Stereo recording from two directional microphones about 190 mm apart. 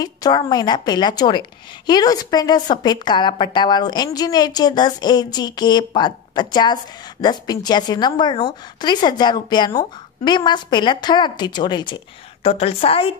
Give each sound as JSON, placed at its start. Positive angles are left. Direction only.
{"t": 0.0, "sound": "a woman's voice", "side_deg": 20}